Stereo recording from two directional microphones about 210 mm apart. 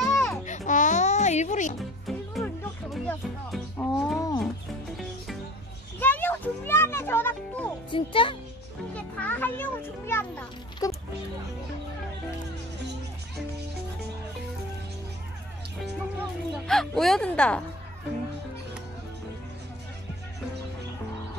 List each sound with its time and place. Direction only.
0.0 s a sound: centre (ahead or behind)
0.5 s music: 35° left (ahead or behind)
1.8 s music: centre (ahead or behind)
5.9 s music: 10° left (ahead or behind)
7.9 s a child's voice: 25° left (ahead or behind)
8.9 s a child's voice: 5° left (ahead or behind)
15.8 s speech: centre (ahead or behind)